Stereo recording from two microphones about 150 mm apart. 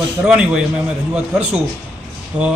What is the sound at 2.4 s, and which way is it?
Speech, 10° right (ahead or behind).